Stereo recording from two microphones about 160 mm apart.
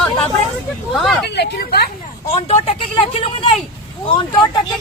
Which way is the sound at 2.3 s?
40° left (ahead or behind).